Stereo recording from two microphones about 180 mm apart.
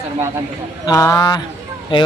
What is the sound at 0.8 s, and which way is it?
Speech, 15° left (ahead or behind).